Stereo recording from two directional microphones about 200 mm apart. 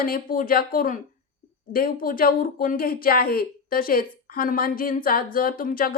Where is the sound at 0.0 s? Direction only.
45° left (ahead or behind).